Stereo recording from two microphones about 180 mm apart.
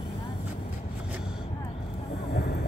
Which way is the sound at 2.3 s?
60° left (ahead or behind).